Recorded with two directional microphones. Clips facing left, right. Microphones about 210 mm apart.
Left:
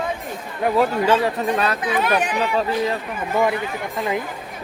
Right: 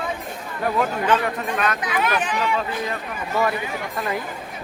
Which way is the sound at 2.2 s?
40° left (ahead or behind).